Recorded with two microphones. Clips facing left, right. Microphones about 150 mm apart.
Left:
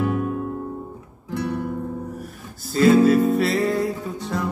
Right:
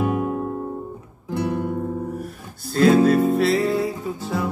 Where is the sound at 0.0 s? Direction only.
15° right (ahead or behind).